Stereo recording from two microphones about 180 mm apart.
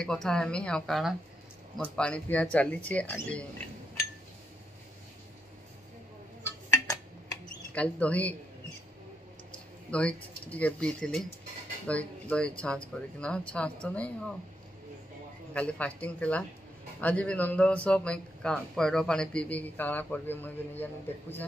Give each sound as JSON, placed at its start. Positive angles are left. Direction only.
{"t": 0.0, "sound": "a man's voice", "side_deg": 5}
{"t": 6.4, "sound": "a sound", "side_deg": 20}
{"t": 7.7, "sound": "a man's voice", "side_deg": 5}
{"t": 9.8, "sound": "a man's voice", "side_deg": 5}
{"t": 15.5, "sound": "a man's voice", "side_deg": 5}